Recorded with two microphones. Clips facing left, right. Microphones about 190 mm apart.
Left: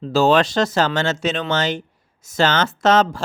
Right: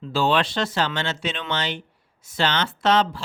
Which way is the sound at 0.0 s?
40° left (ahead or behind).